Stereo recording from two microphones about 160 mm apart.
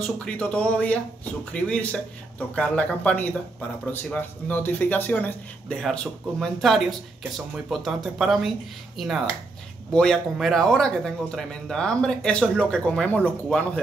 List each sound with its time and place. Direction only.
0.0 s speech: 5° left (ahead or behind)